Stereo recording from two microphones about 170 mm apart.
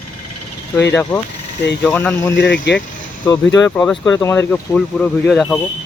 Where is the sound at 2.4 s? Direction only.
90° left.